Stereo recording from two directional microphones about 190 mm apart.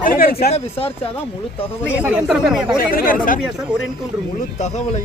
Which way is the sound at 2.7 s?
50° left (ahead or behind).